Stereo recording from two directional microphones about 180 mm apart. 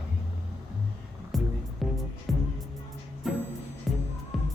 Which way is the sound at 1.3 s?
Centre (ahead or behind).